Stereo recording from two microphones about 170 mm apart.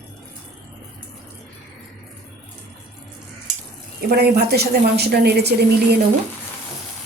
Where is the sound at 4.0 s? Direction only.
70° right (ahead or behind).